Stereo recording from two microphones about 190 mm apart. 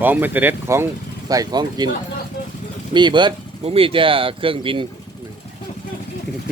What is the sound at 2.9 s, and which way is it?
Speech, 25° right (ahead or behind).